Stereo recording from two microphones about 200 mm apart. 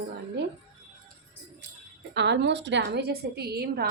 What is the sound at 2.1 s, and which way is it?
A woman's voice, 60° right (ahead or behind).